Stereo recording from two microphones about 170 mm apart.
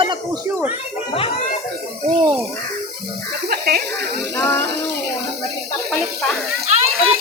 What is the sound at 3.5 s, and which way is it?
Speech, 65° right (ahead or behind).